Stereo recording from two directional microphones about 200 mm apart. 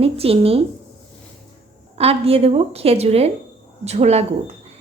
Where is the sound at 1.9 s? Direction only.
30° right (ahead or behind).